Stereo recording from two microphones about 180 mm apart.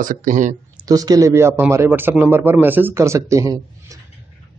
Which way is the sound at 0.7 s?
20° right (ahead or behind).